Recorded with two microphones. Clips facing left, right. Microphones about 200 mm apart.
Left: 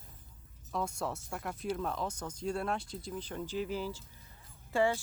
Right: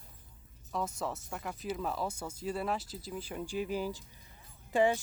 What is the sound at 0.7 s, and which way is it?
Speech, centre (ahead or behind).